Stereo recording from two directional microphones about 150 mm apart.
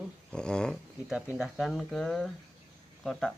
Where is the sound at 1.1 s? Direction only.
5° right (ahead or behind).